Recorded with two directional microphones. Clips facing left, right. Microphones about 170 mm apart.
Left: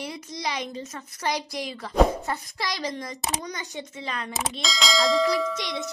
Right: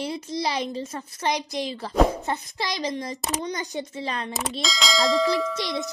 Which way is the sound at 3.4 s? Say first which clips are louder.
Right 5 dB; 35° right (ahead or behind).